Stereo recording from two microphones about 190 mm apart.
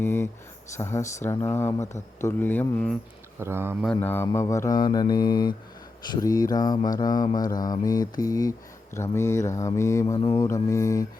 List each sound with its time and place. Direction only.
0.0 s speech: 10° left (ahead or behind)
3.4 s speech: 10° right (ahead or behind)
3.9 s mantra: 10° left (ahead or behind)
9.0 s speech: 15° left (ahead or behind)